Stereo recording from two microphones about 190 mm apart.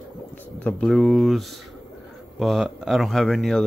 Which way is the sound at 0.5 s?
5° left (ahead or behind).